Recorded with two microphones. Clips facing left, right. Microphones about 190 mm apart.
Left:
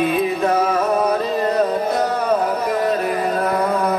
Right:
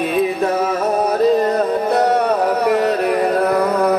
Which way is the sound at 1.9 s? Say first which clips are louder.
Right 3 dB; 65° right (ahead or behind).